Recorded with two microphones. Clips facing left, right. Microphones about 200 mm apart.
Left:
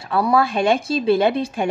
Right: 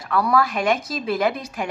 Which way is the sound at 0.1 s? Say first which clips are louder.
Left 2 dB; 25° left (ahead or behind).